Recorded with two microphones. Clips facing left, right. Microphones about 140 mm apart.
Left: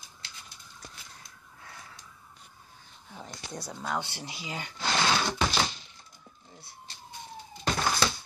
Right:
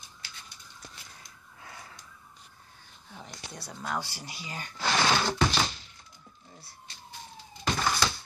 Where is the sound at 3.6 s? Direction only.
15° left (ahead or behind).